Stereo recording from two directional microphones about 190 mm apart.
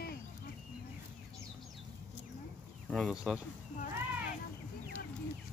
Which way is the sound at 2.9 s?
Centre (ahead or behind).